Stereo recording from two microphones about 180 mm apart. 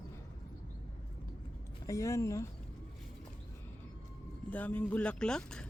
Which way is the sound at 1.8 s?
15° left (ahead or behind).